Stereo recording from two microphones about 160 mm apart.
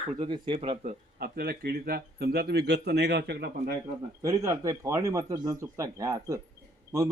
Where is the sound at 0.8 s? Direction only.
60° right (ahead or behind); by 3.6 s 90° right.